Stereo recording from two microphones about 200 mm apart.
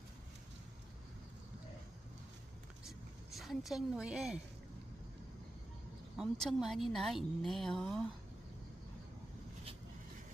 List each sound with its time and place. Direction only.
3.3 s a woman's voice: centre (ahead or behind)
6.1 s a woman's voice: centre (ahead or behind)